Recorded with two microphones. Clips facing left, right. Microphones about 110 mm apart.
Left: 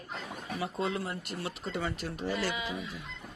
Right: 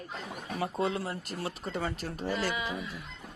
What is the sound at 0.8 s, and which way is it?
A woman's voice, 30° right (ahead or behind).